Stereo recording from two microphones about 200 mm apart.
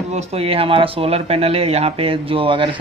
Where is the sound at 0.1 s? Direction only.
30° right (ahead or behind).